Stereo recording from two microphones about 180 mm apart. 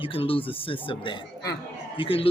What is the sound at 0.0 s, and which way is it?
A man's voice, 30° left (ahead or behind).